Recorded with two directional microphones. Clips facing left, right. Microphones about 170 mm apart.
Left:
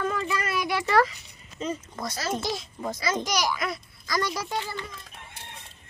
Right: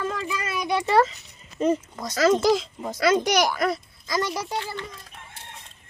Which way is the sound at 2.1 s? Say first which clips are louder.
Right 12 dB; 90° right.